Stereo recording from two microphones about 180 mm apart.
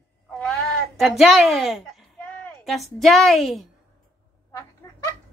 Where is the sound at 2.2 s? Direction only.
10° left (ahead or behind).